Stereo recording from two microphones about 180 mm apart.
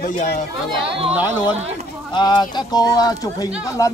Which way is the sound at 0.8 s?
30° right (ahead or behind).